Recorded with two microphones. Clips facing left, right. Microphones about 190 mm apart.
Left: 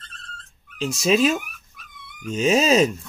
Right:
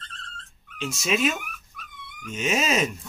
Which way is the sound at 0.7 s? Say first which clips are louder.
Left 7 dB; 35° left (ahead or behind).